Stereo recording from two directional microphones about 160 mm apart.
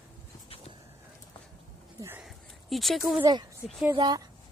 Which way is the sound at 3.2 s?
25° right (ahead or behind).